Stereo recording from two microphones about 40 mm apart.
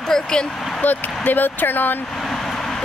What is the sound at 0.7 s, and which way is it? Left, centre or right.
Speech, left.